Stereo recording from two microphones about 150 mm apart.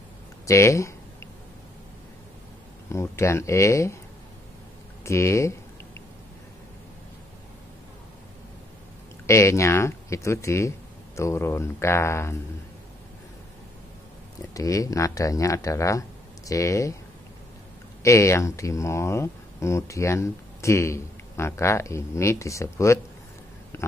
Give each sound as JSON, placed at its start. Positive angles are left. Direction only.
{"t": 0.5, "sound": "speech", "side_deg": 20}
{"t": 2.9, "sound": "speech", "side_deg": 20}
{"t": 5.0, "sound": "speech", "side_deg": 20}
{"t": 9.2, "sound": "speech", "side_deg": 20}
{"t": 14.5, "sound": "speech", "side_deg": 20}
{"t": 18.0, "sound": "speech", "side_deg": 20}